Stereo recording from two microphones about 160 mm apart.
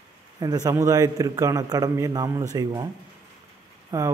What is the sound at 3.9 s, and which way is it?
Speech, 20° right (ahead or behind).